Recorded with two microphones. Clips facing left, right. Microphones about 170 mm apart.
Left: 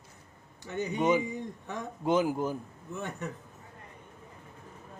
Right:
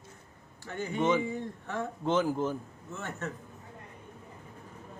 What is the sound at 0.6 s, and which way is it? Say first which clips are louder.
Speech: left 1 dB; 20° left (ahead or behind).